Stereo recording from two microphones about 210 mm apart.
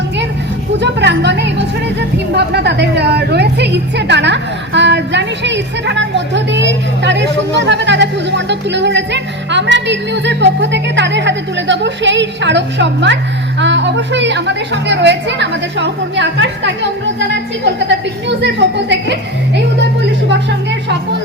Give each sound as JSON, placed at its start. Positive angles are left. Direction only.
{"t": 0.8, "sound": "a sound", "side_deg": -55}
{"t": 2.0, "sound": "a woman's voice", "side_deg": -50}
{"t": 18.3, "sound": "a woman's voice", "side_deg": -55}